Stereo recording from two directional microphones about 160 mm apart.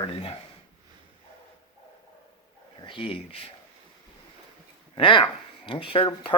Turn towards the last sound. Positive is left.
turn(degrees=35)  # may be behind; listen again after turning